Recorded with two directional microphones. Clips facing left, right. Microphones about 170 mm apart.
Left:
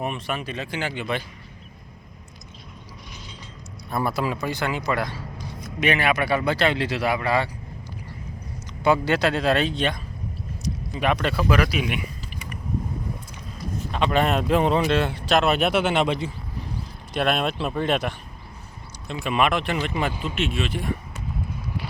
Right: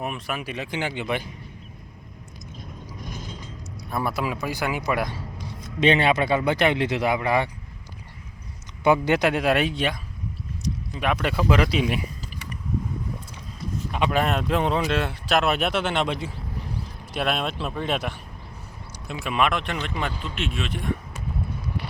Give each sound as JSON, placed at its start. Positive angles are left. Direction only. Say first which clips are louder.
{"t": 0.0, "sound": "a man's voice", "louder": "left 2 dB", "side_deg": 0}
{"t": 3.1, "sound": "a sound", "louder": "right 8 dB", "side_deg": -50}
{"t": 3.8, "sound": "a man's voice", "louder": "left 2 dB", "side_deg": 0}
{"t": 5.6, "sound": "speech", "louder": "right 3 dB", "side_deg": -25}
{"t": 8.8, "sound": "a man's voice", "louder": "right 1 dB", "side_deg": -15}
{"t": 11.2, "sound": "speech", "louder": "even", "side_deg": -15}
{"t": 13.9, "sound": "speech", "louder": "left 2 dB", "side_deg": -10}